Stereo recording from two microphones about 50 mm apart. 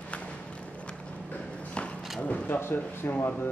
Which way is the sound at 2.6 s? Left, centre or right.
Left.